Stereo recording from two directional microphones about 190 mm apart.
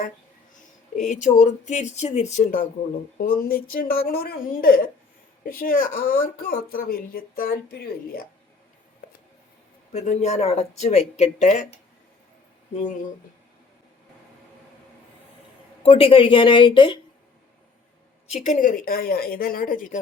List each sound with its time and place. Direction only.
0.9 s speech: 40° left (ahead or behind)
9.9 s speech: 35° left (ahead or behind)
15.8 s speech: 30° left (ahead or behind)
18.3 s speech: 35° left (ahead or behind)